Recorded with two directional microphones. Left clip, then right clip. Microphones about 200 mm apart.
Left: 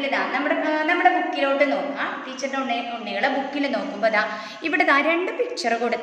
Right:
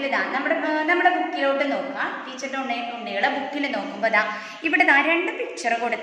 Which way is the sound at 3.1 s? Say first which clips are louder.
Even; 25° left (ahead or behind).